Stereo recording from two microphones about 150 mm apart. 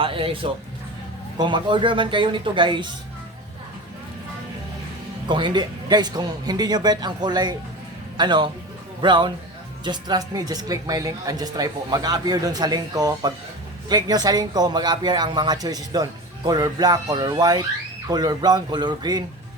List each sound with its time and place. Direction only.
0.0 s music: 35° right (ahead or behind)
1.4 s a man's voice: 30° right (ahead or behind)
5.3 s a man's voice: 30° right (ahead or behind)